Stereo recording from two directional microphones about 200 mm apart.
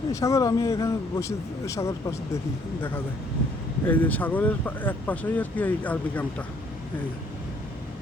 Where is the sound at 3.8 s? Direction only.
10° left (ahead or behind).